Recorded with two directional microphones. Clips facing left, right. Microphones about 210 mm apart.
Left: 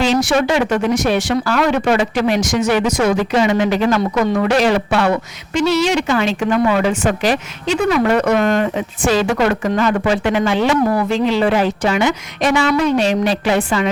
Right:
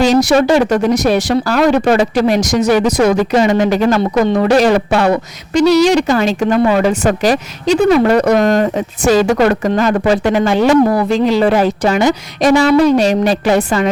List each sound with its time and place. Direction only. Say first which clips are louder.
0.0 s speech: right 5 dB; 40° right (ahead or behind)